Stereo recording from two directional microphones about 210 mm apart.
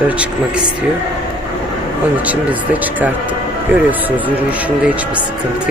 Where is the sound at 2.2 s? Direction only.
5° right (ahead or behind).